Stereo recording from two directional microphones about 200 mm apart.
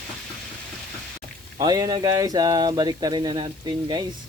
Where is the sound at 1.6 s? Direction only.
20° right (ahead or behind).